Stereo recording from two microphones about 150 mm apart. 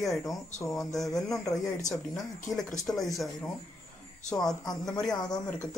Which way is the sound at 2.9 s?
10° left (ahead or behind).